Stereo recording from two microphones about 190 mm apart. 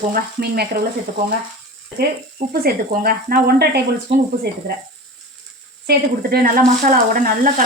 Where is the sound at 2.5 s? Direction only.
50° right (ahead or behind).